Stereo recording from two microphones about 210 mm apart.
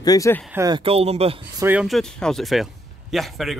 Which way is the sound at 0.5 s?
15° right (ahead or behind).